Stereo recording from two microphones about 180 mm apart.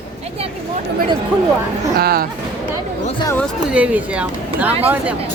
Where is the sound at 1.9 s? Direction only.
60° right (ahead or behind).